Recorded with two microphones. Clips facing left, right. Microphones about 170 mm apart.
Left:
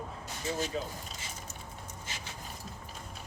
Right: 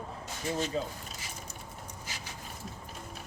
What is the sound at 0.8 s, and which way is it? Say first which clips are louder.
Speech: right 3 dB; 35° right (ahead or behind).